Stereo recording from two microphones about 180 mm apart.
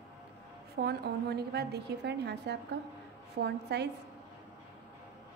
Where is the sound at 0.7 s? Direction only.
65° right (ahead or behind).